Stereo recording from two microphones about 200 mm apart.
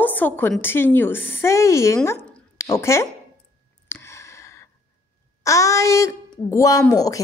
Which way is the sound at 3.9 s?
10° left (ahead or behind).